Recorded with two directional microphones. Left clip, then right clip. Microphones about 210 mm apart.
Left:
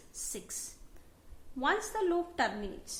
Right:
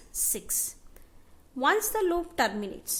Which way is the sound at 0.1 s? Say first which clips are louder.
Right 9 dB; 45° right (ahead or behind).